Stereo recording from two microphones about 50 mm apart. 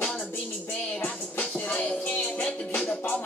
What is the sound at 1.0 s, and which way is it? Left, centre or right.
Music, left.